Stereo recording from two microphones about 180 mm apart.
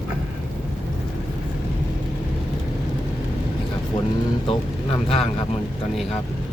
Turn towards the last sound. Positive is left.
turn(degrees=30)  # may be behind; listen again after turning